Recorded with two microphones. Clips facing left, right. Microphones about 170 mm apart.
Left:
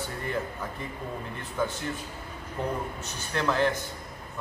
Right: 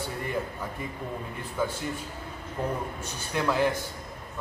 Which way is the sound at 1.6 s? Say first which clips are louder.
Even; 10° right (ahead or behind).